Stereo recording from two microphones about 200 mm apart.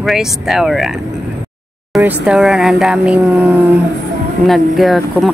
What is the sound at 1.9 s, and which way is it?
Speech, centre (ahead or behind).